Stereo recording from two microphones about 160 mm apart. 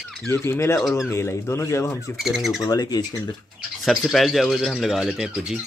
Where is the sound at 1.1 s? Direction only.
15° left (ahead or behind).